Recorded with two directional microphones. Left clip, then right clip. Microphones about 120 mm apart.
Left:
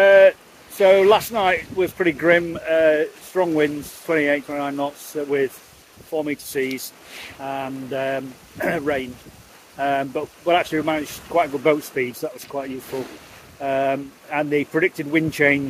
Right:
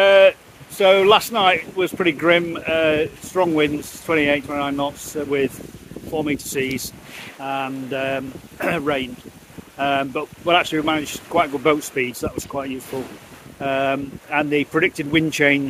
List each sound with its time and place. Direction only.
0.0 s speech: 15° right (ahead or behind)